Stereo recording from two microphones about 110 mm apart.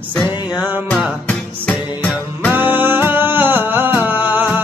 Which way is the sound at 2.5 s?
20° right (ahead or behind).